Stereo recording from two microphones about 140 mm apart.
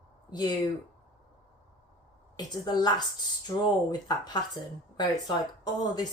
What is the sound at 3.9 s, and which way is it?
Speech, 30° left (ahead or behind).